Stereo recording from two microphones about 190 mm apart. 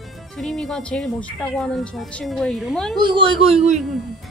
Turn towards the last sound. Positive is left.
turn(degrees=-35)  # may be behind; listen again after turning